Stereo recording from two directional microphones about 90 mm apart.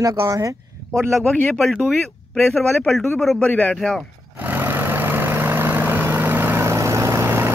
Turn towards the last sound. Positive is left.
turn(degrees=-30)  # may be behind; listen again after turning